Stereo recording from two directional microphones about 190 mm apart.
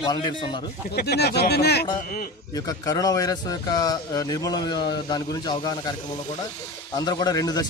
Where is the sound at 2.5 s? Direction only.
20° left (ahead or behind).